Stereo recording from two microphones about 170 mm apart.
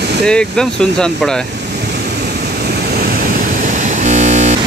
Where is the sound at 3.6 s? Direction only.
45° right (ahead or behind).